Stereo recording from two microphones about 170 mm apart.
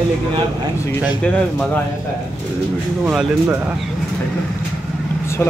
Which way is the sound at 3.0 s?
Centre (ahead or behind).